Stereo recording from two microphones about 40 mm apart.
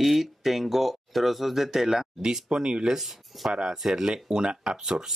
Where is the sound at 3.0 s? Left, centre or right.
Centre.